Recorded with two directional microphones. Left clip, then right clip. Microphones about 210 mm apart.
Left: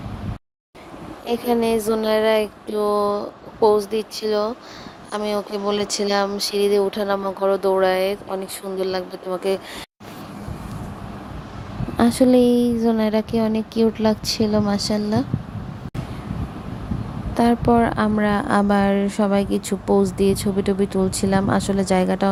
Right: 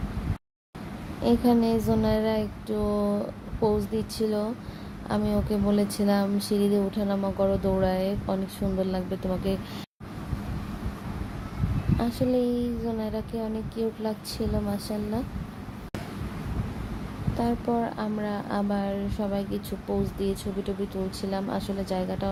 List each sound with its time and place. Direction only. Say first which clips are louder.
1.3 s a woman's voice: left 4 dB; 30° left (ahead or behind)
11.9 s a woman's voice: left 11 dB; 35° left (ahead or behind)
17.3 s a woman's voice: left 11 dB; 35° left (ahead or behind)